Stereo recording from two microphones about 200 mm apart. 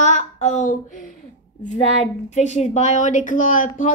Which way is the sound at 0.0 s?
35° left (ahead or behind).